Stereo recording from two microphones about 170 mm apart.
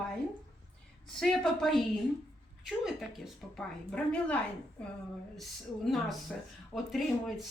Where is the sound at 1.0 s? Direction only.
Centre (ahead or behind).